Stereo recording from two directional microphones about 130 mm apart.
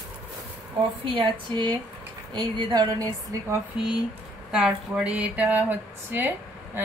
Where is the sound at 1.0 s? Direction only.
40° right (ahead or behind).